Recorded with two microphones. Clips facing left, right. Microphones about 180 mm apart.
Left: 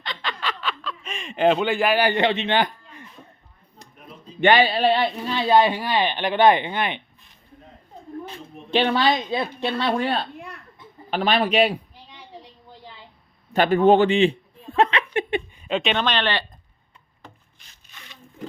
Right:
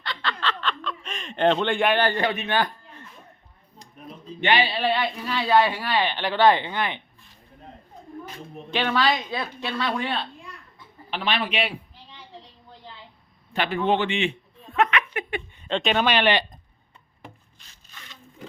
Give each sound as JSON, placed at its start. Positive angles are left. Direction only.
{"t": 0.0, "sound": "a sound", "side_deg": 15}
{"t": 2.0, "sound": "a man's voice", "side_deg": 20}
{"t": 4.4, "sound": "speech", "side_deg": 45}
{"t": 8.7, "sound": "speech", "side_deg": 30}
{"t": 9.9, "sound": "a man's voice", "side_deg": 40}
{"t": 10.3, "sound": "a sound", "side_deg": 65}
{"t": 11.1, "sound": "a man's voice", "side_deg": 45}
{"t": 13.5, "sound": "a sound", "side_deg": 45}
{"t": 15.6, "sound": "speech", "side_deg": 5}